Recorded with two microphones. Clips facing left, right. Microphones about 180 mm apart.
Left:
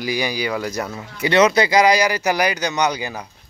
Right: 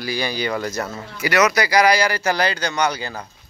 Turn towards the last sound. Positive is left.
turn(degrees=15)  # may be behind; listen again after turning